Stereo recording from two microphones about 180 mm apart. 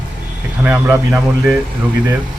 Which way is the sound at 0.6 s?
10° right (ahead or behind).